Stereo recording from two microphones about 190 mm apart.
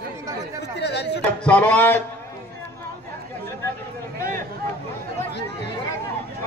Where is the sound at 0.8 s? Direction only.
65° left (ahead or behind).